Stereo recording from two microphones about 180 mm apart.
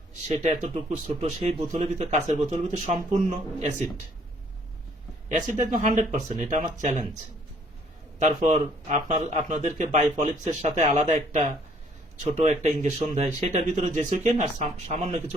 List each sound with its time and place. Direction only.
0.1 s speech: 40° right (ahead or behind)
5.3 s speech: 40° right (ahead or behind)
8.2 s speech: 40° right (ahead or behind)